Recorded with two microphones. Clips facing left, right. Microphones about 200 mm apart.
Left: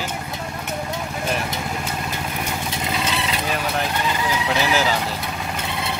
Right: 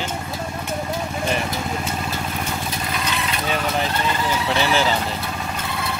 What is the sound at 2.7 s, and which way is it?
Vehicle, 25° left (ahead or behind).